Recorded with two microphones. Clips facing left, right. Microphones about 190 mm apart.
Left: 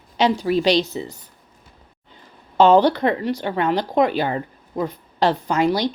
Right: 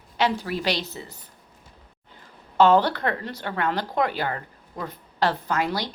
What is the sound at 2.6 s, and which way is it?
Speech, 20° left (ahead or behind).